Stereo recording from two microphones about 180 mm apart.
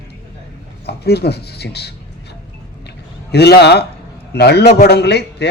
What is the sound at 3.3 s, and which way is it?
A man's voice, 65° left (ahead or behind).